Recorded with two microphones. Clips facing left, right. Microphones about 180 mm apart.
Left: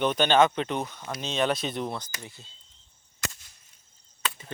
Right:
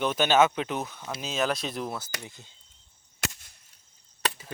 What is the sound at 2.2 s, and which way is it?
Speech, 15° right (ahead or behind).